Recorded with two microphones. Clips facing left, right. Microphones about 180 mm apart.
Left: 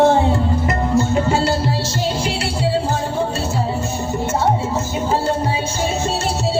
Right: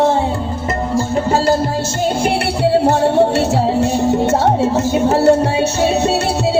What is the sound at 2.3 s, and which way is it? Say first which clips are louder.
Music: right 6 dB; 60° right (ahead or behind).